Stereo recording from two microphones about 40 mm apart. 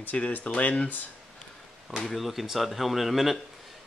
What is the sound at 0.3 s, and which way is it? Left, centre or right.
Speech, left.